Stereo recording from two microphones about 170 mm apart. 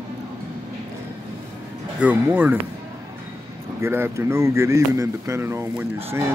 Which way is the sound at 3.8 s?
15° right (ahead or behind).